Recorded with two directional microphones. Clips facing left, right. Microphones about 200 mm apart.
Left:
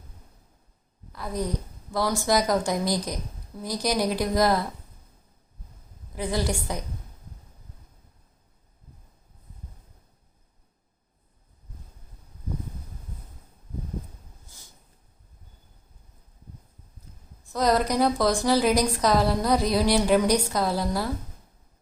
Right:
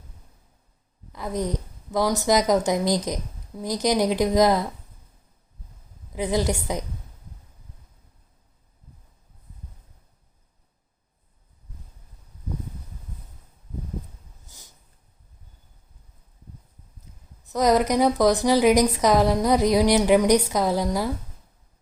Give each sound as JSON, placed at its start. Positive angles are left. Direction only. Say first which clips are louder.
{"t": 1.1, "sound": "a woman's voice", "louder": "right 2 dB", "side_deg": -20}
{"t": 6.1, "sound": "a woman's voice", "louder": "right 4 dB", "side_deg": -20}
{"t": 17.5, "sound": "a woman's voice", "louder": "right 3 dB", "side_deg": -15}